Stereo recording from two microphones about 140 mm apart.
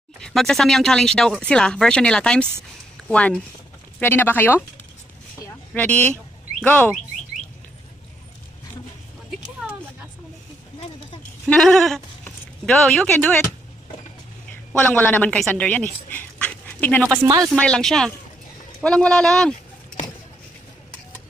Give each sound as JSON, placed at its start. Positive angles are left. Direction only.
{"t": 0.2, "sound": "speech", "side_deg": 0}
{"t": 5.8, "sound": "speech", "side_deg": 10}
{"t": 9.6, "sound": "a sound", "side_deg": -5}
{"t": 11.4, "sound": "speech", "side_deg": 5}
{"t": 14.8, "sound": "speech", "side_deg": 10}
{"t": 17.0, "sound": "speech", "side_deg": -15}
{"t": 17.6, "sound": "speech", "side_deg": 5}